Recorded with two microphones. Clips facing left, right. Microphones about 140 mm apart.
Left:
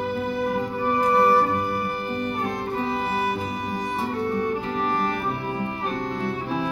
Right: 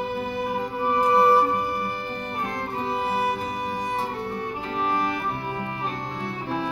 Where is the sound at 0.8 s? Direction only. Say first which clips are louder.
Right 1 dB; 20° right (ahead or behind).